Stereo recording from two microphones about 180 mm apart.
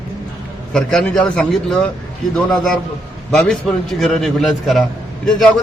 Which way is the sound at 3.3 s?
5° left (ahead or behind).